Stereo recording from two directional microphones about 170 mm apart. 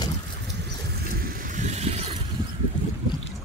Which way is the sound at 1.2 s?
55° right (ahead or behind).